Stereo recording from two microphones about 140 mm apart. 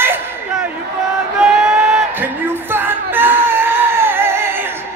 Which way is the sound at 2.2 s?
15° right (ahead or behind).